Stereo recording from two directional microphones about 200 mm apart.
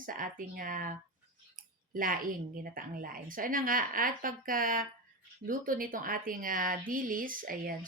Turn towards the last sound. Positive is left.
turn(degrees=-45)  # may be behind; listen again after turning